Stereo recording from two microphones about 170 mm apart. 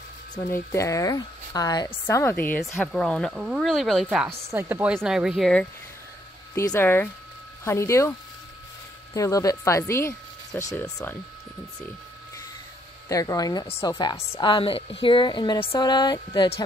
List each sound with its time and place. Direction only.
0.3 s a woman's voice: 15° left (ahead or behind); by 4.3 s centre (ahead or behind)
4.5 s speech: 15° right (ahead or behind); by 5.7 s 5° left (ahead or behind)
6.5 s a woman's voice: 15° left (ahead or behind)
9.1 s a woman's voice: 20° left (ahead or behind)
13.1 s speech: 20° left (ahead or behind)